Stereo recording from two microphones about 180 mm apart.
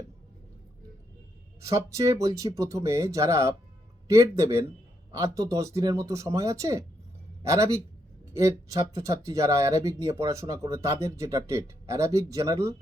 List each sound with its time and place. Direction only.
1.6 s speech: 15° right (ahead or behind)